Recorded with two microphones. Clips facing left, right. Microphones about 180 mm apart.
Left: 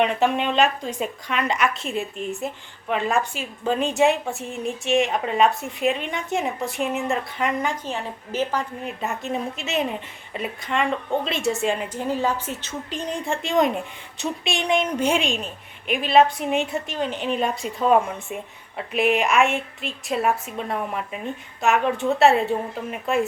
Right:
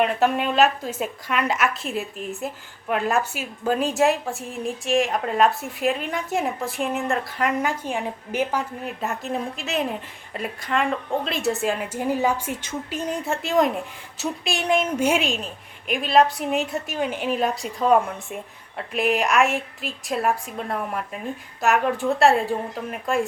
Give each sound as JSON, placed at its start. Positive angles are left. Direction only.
{"t": 0.0, "sound": "a woman's voice", "side_deg": 0}
{"t": 7.9, "sound": "a woman's voice", "side_deg": -10}